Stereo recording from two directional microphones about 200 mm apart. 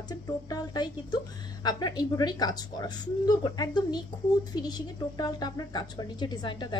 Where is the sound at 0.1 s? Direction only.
20° left (ahead or behind).